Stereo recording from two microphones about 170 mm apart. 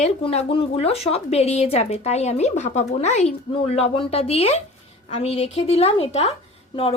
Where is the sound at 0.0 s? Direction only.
35° left (ahead or behind).